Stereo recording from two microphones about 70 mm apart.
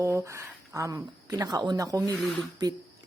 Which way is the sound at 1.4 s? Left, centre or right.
Right.